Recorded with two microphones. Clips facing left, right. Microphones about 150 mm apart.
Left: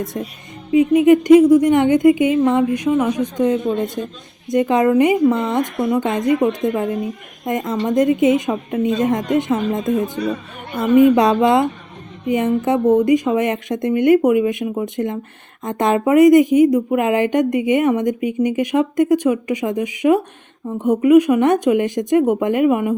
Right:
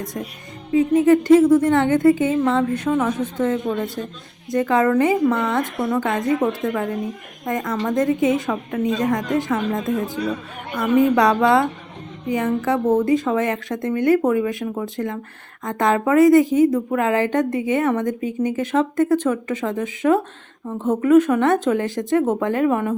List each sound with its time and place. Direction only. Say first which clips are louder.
0.7 s a woman's voice: left 3 dB; 15° left (ahead or behind)